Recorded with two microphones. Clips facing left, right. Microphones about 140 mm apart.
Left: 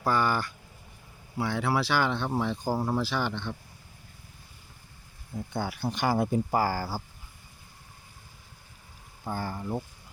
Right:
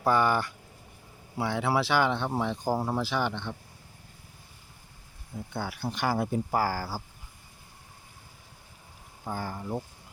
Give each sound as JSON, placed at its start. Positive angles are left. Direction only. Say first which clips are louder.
{"t": 0.0, "sound": "speech", "louder": "right 2 dB", "side_deg": -20}
{"t": 1.5, "sound": "speech", "louder": "right 1 dB", "side_deg": -20}
{"t": 2.7, "sound": "speech", "louder": "left 1 dB", "side_deg": -5}
{"t": 3.0, "sound": "speech", "louder": "right 1 dB", "side_deg": -15}
{"t": 5.5, "sound": "speech", "louder": "left 2 dB", "side_deg": 0}
{"t": 9.2, "sound": "speech", "louder": "left 1 dB", "side_deg": -10}